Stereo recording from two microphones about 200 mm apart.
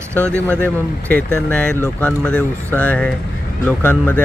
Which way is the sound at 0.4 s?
10° left (ahead or behind).